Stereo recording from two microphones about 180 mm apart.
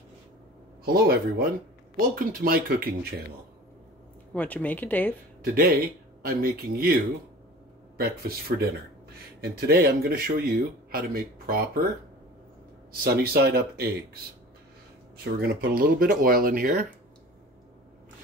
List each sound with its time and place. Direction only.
0.8 s speech: 55° right (ahead or behind)
4.3 s speech: 10° left (ahead or behind)
5.4 s speech: 55° right (ahead or behind)
8.0 s speech: 60° right (ahead or behind)
13.0 s speech: 60° right (ahead or behind)
15.3 s speech: 55° right (ahead or behind)